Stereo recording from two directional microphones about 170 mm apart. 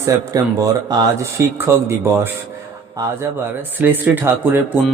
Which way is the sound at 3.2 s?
10° right (ahead or behind).